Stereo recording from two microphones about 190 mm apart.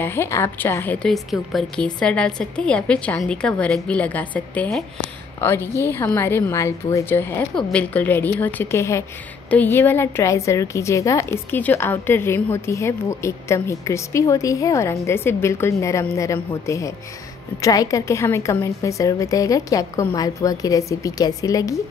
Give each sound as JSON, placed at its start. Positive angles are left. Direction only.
{"t": 0.0, "sound": "a woman's voice", "side_deg": 10}